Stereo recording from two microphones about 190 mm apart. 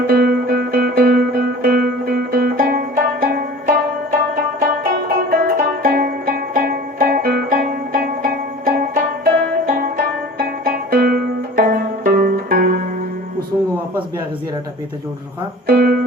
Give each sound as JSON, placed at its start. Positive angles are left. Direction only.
{"t": 0.1, "sound": "music", "side_deg": -50}
{"t": 4.6, "sound": "music", "side_deg": -50}
{"t": 15.6, "sound": "music", "side_deg": -50}